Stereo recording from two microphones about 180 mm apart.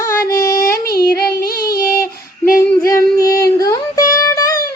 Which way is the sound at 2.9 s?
15° left (ahead or behind).